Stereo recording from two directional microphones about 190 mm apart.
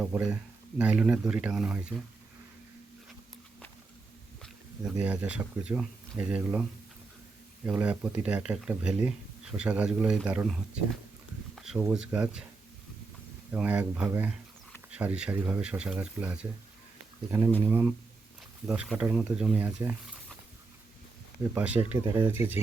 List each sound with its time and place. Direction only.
0.0 s speech: 5° right (ahead or behind)
4.8 s speech: 10° right (ahead or behind)
13.5 s speech: 10° right (ahead or behind)
17.6 s speech: 10° right (ahead or behind)
21.5 s speech: 10° right (ahead or behind)